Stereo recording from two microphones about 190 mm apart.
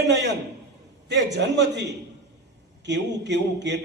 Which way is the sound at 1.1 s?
65° right (ahead or behind).